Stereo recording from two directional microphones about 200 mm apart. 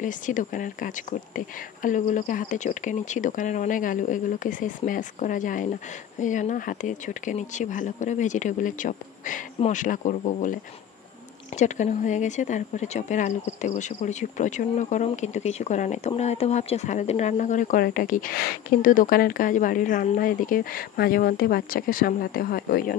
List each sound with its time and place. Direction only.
0.0 s speech: 40° left (ahead or behind)